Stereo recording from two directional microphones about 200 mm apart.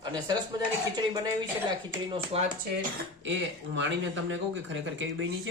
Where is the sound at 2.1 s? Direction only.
30° right (ahead or behind).